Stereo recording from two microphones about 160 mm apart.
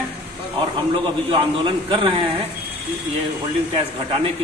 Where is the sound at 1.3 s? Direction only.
35° right (ahead or behind).